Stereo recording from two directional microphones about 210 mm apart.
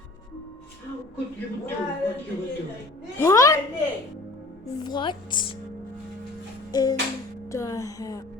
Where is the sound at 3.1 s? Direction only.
15° left (ahead or behind).